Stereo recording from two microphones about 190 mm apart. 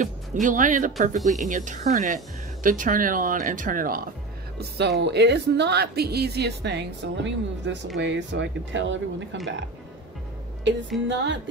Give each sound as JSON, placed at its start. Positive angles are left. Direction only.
{"t": 0.0, "sound": "speech", "side_deg": -40}
{"t": 4.6, "sound": "a woman's voice", "side_deg": -60}
{"t": 11.1, "sound": "speech", "side_deg": -70}